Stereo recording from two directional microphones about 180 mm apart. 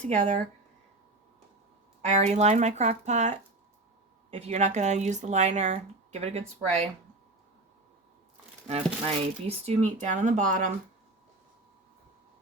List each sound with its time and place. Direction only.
0.0 s speech: 40° right (ahead or behind)
2.0 s speech: 40° right (ahead or behind)
8.6 s speech: 35° right (ahead or behind)